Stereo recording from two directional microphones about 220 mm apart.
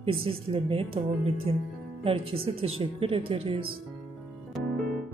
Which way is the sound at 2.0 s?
25° right (ahead or behind).